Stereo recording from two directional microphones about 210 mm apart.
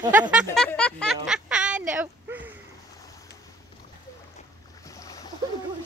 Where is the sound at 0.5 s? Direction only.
5° left (ahead or behind).